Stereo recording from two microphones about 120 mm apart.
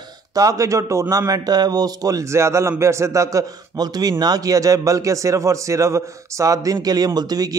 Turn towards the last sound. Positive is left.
turn(degrees=-35)  # may be behind; listen again after turning